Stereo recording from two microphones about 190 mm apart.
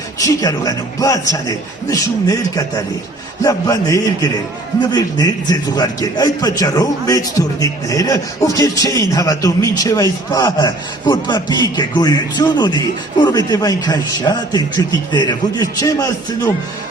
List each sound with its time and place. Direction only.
0.2 s a man's voice: 20° left (ahead or behind)